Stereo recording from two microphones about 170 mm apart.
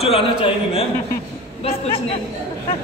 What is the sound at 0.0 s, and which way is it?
A man's voice, 35° left (ahead or behind).